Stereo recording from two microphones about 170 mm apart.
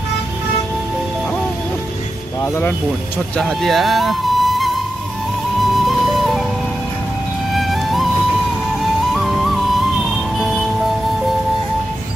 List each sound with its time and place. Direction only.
2.4 s speech: 15° left (ahead or behind)
3.3 s speech: 5° left (ahead or behind)
5.9 s music: centre (ahead or behind)
7.5 s music: centre (ahead or behind)
8.8 s flute: centre (ahead or behind)